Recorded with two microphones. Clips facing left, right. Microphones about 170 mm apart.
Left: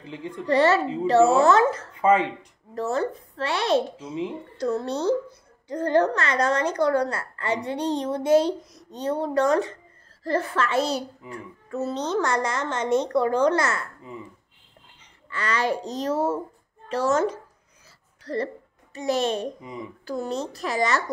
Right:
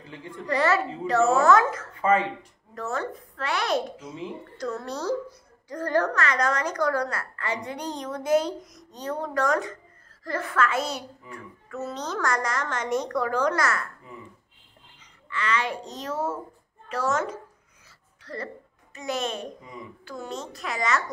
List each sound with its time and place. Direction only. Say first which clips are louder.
0.0 s speech: left 6 dB; 20° left (ahead or behind)
0.5 s a child's voice: left 4 dB; 30° left (ahead or behind)
2.0 s speech: left 3 dB; 15° left (ahead or behind)
2.7 s a woman's voice: left 5 dB; 30° left (ahead or behind)
15.2 s a child's voice: left 3 dB; 40° left (ahead or behind)